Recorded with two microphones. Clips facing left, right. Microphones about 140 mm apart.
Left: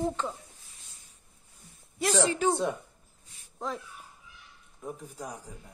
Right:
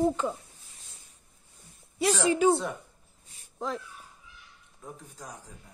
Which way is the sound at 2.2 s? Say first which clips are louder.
Right 3 dB; 10° right (ahead or behind).